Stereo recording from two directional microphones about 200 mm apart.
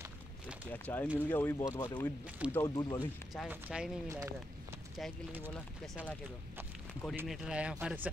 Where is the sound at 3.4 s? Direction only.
5° right (ahead or behind).